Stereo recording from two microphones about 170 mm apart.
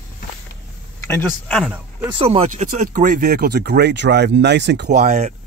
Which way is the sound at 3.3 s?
70° right (ahead or behind).